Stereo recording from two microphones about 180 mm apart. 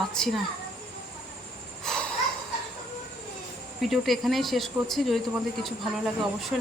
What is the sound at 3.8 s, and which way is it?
A woman's voice, centre (ahead or behind).